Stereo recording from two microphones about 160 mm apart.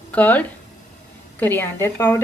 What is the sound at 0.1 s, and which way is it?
A woman's voice, 10° left (ahead or behind).